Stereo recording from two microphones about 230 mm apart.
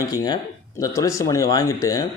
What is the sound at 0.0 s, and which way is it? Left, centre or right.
Speech, centre.